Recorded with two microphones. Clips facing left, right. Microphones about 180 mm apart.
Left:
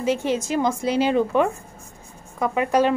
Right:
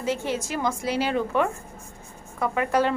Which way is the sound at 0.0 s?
15° left (ahead or behind).